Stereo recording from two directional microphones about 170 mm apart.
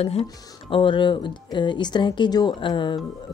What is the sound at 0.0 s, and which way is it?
A woman's voice, 35° left (ahead or behind).